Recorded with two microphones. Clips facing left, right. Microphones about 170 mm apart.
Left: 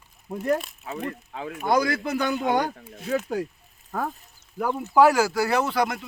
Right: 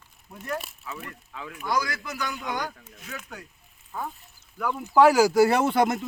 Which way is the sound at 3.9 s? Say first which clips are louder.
Left 5 dB; 50° left (ahead or behind).